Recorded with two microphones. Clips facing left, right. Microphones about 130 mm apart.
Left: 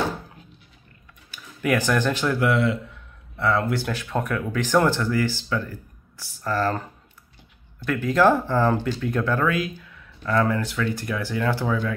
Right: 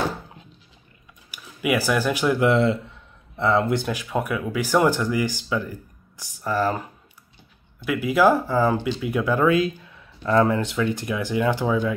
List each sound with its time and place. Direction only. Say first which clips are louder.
1.3 s speech: even; 10° right (ahead or behind)
2.4 s speech: right 3 dB; 30° right (ahead or behind)